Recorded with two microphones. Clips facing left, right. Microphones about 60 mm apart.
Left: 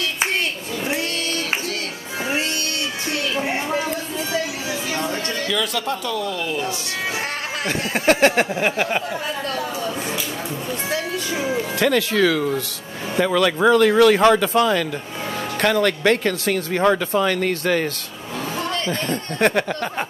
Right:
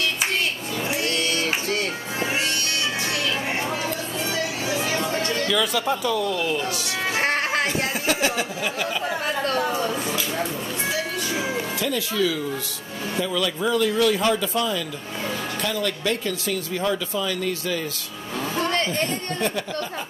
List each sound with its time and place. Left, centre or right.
3.5 s a sound: centre
5.1 s speech: centre
7.2 s music: right
7.6 s speech: left
11.8 s speech: left